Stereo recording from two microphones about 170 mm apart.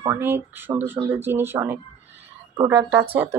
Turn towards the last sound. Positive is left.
turn(degrees=-20)  # may be behind; listen again after turning